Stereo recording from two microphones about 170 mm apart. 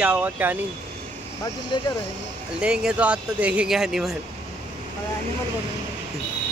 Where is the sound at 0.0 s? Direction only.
10° right (ahead or behind).